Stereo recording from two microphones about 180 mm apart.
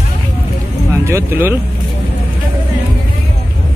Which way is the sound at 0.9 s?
15° right (ahead or behind).